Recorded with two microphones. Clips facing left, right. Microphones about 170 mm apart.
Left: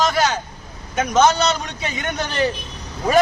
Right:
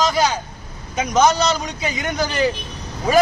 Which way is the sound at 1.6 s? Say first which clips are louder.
Right 3 dB; 10° right (ahead or behind).